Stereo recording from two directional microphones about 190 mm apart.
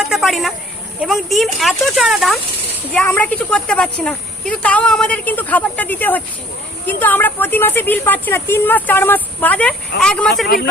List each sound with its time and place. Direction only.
0.0 s a sound: centre (ahead or behind)
1.0 s a woman's voice: centre (ahead or behind)
10.4 s speech: 55° left (ahead or behind)